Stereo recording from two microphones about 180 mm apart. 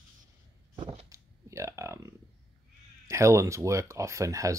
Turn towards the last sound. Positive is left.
turn(degrees=-15)  # may be behind; listen again after turning